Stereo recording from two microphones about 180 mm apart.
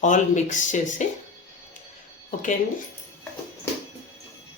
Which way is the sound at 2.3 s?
45° left (ahead or behind).